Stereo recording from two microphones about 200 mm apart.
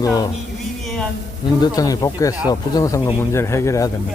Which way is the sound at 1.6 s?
20° left (ahead or behind).